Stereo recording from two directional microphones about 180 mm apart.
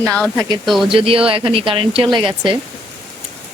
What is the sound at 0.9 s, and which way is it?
Speech, 30° right (ahead or behind).